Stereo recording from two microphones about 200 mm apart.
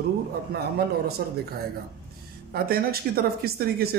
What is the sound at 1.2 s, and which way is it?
Speech, 50° right (ahead or behind).